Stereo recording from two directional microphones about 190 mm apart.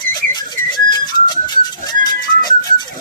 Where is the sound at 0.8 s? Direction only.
20° left (ahead or behind).